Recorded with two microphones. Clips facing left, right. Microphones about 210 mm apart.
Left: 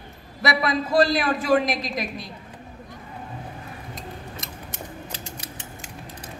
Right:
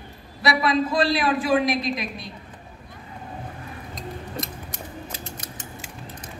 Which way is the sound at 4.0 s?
Centre (ahead or behind).